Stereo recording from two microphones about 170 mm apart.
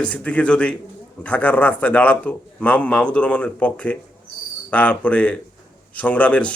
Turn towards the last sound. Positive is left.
turn(degrees=5)  # may be behind; listen again after turning